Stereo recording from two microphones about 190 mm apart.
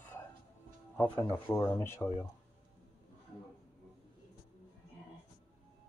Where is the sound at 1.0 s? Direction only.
10° left (ahead or behind).